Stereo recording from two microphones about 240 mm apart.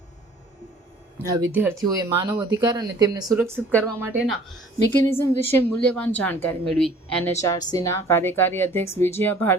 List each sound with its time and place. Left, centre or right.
1.4 s speech: centre
4.9 s a woman's voice: centre
7.4 s a woman's voice: centre